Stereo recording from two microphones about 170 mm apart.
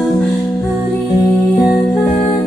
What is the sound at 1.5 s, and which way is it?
Music, centre (ahead or behind).